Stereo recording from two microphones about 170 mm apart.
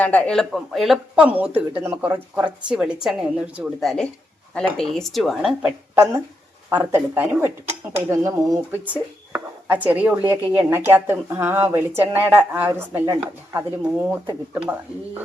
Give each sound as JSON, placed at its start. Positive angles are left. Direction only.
{"t": 0.0, "sound": "speech", "side_deg": 10}
{"t": 8.4, "sound": "speech", "side_deg": 10}
{"t": 9.3, "sound": "speech", "side_deg": -10}